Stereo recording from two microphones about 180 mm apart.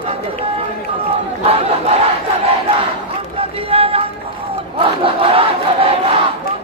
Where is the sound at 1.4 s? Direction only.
35° right (ahead or behind).